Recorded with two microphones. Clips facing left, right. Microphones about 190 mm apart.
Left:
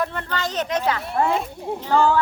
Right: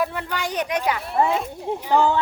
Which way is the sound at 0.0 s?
10° right (ahead or behind).